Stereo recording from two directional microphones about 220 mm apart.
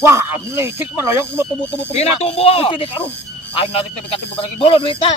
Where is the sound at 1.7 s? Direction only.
25° left (ahead or behind).